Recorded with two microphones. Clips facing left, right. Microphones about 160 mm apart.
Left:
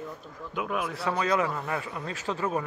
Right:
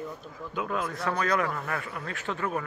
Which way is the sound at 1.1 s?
20° left (ahead or behind).